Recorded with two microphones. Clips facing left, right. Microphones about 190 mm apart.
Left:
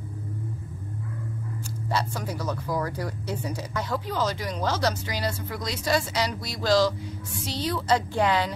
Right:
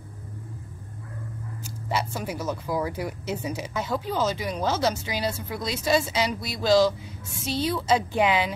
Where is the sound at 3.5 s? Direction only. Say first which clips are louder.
Right 1 dB; 10° right (ahead or behind).